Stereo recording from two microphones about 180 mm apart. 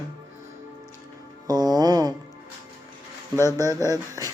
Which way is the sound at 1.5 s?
20° right (ahead or behind).